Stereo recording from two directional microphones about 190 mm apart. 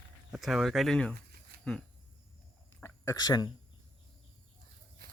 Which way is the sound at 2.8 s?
15° left (ahead or behind).